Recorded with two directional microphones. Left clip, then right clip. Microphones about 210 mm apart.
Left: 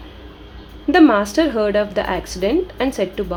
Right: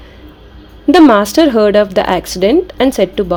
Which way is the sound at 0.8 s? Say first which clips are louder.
Right 6 dB; 35° right (ahead or behind).